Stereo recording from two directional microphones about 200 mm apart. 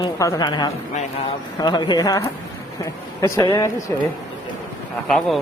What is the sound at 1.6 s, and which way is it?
A woman's voice, 20° left (ahead or behind).